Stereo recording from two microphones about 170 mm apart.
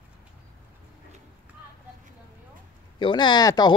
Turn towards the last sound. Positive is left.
turn(degrees=25)  # may be behind; listen again after turning